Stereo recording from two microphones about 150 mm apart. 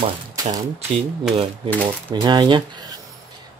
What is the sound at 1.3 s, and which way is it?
Speech, 35° right (ahead or behind).